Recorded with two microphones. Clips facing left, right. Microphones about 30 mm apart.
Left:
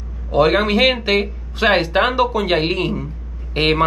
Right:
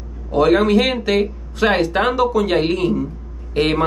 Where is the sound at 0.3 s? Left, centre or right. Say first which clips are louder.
Right 1 dB; left.